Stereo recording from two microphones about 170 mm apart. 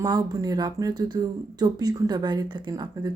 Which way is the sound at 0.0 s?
20° right (ahead or behind).